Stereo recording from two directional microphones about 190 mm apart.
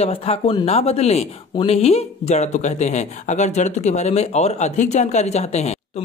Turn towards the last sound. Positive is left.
turn(degrees=35)  # may be behind; listen again after turning